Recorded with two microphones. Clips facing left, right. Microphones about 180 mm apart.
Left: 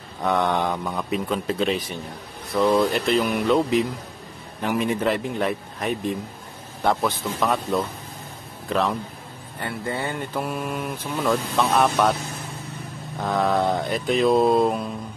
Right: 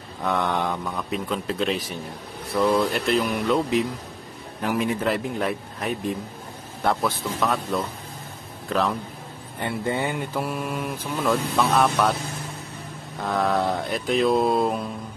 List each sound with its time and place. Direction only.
0.2 s a man's voice: centre (ahead or behind)
9.6 s speech: 20° right (ahead or behind)
10.3 s speech: centre (ahead or behind)
13.2 s speech: centre (ahead or behind)